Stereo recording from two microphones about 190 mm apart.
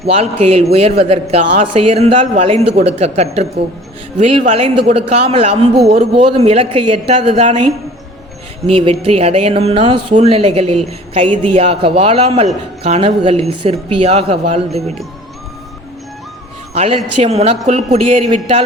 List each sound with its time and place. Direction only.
0.0 s a man's voice: 30° right (ahead or behind)
8.7 s a man's voice: 30° right (ahead or behind)
16.7 s a man's voice: 35° right (ahead or behind)